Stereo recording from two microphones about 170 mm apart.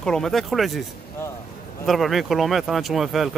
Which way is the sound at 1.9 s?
Centre (ahead or behind).